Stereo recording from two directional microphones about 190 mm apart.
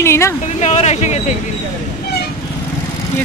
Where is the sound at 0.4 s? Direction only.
40° left (ahead or behind).